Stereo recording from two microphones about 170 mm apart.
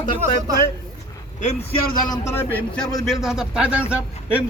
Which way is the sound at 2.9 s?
Centre (ahead or behind).